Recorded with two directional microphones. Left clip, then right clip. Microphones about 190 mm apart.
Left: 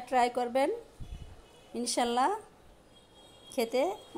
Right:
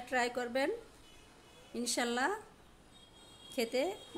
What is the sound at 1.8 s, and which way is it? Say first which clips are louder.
Speech: left 6 dB; 10° left (ahead or behind).